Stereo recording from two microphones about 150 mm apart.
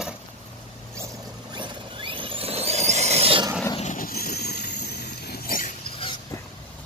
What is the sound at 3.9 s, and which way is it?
Vehicle, 80° left.